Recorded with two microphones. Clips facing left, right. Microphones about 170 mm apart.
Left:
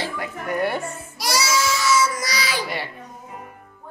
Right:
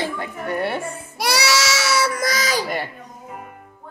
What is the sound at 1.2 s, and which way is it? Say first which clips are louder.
Baby cry: right 2 dB; 65° right (ahead or behind).